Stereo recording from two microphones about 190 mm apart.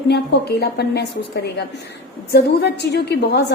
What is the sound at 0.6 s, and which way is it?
A woman's voice, 60° left (ahead or behind).